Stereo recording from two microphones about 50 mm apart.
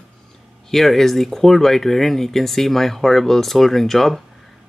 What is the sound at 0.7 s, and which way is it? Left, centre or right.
Speech, centre.